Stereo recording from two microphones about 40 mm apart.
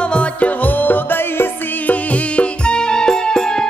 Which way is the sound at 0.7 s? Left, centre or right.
Left.